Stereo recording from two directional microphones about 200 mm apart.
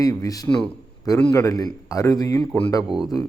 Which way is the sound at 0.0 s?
15° left (ahead or behind).